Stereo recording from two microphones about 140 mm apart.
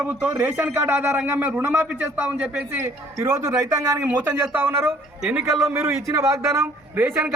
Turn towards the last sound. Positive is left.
turn(degrees=-15)  # may be behind; listen again after turning